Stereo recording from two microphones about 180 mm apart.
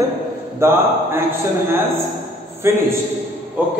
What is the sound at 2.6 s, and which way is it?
Speech, 15° right (ahead or behind).